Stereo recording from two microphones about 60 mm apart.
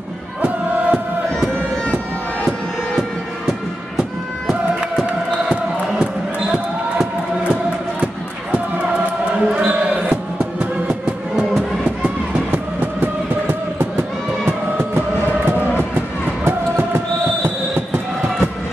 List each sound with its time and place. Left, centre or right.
0.4 s music: right
3.0 s music: centre
9.3 s basketball bounce: centre
10.6 s music: centre
12.8 s a sound: right
14.8 s music: right
16.4 s a sound: right